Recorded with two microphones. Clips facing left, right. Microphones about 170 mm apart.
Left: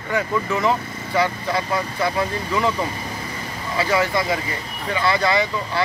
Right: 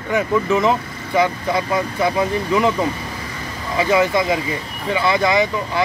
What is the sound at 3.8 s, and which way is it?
Speech, 20° right (ahead or behind).